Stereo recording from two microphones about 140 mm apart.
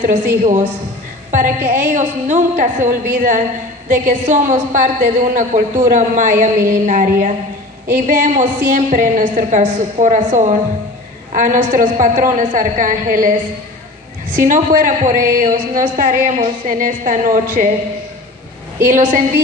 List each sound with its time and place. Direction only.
0.4 s a woman's voice: 55° right (ahead or behind)
14.3 s a woman's voice: 70° right (ahead or behind)
18.9 s a woman's voice: 65° right (ahead or behind)